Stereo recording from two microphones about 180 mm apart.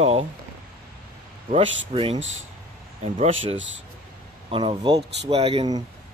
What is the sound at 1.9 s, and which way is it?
Speech, 30° right (ahead or behind).